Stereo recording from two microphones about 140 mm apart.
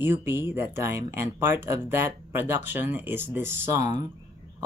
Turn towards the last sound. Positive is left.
turn(degrees=-15)  # may be behind; listen again after turning